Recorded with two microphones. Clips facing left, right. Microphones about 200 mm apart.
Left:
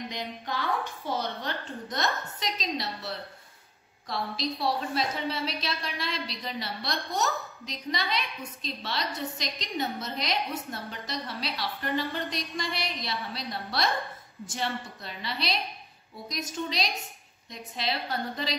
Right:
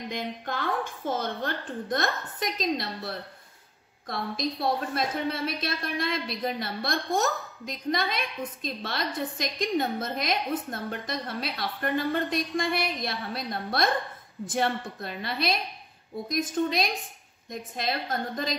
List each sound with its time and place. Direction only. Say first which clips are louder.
0.1 s a woman's voice: right 2 dB; 50° right (ahead or behind)